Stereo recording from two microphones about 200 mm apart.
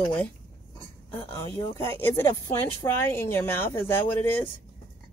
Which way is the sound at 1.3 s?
15° left (ahead or behind).